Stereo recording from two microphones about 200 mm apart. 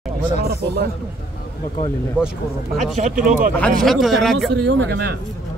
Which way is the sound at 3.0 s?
40° right (ahead or behind).